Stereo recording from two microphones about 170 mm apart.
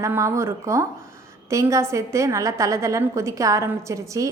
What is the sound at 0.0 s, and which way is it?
A woman's voice, 15° right (ahead or behind).